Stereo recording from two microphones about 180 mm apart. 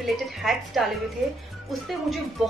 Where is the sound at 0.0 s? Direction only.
Centre (ahead or behind).